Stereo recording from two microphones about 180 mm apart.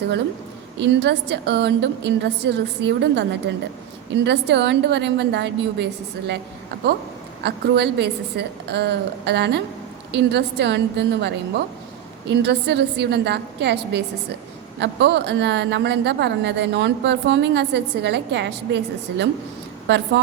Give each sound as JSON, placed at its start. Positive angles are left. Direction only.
{"t": 0.8, "sound": "a woman's voice", "side_deg": -70}
{"t": 7.4, "sound": "a woman's voice", "side_deg": -70}